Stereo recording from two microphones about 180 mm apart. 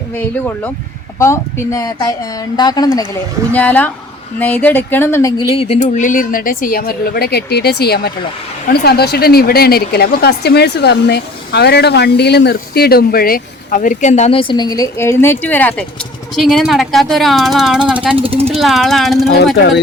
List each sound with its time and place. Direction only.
0.2 s speech: 10° left (ahead or behind)
3.5 s speech: 10° left (ahead or behind)
5.5 s speech: 35° left (ahead or behind); by 18.1 s 5° right (ahead or behind)
18.2 s speech: 30° right (ahead or behind)
18.6 s speech: centre (ahead or behind)
19.5 s speech: 70° left (ahead or behind)